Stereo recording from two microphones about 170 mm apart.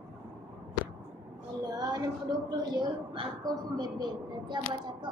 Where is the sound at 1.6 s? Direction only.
25° right (ahead or behind).